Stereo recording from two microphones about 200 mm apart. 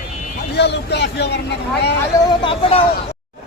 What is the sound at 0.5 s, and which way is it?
Speech, 55° left (ahead or behind).